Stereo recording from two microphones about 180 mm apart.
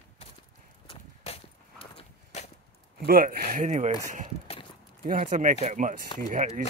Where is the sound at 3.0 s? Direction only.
50° right (ahead or behind).